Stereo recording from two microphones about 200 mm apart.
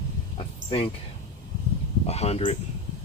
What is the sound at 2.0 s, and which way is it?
Speech, 30° left (ahead or behind).